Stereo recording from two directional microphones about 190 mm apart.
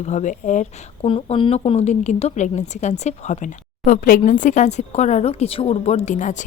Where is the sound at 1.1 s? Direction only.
25° left (ahead or behind).